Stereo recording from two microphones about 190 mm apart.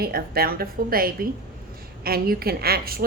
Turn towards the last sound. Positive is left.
turn(degrees=-50)  # may be behind; listen again after turning